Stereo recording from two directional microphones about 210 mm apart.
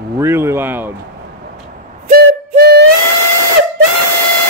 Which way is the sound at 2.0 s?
50° right (ahead or behind).